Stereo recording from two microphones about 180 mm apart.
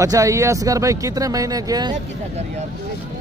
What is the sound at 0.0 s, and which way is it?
Speech, 15° right (ahead or behind).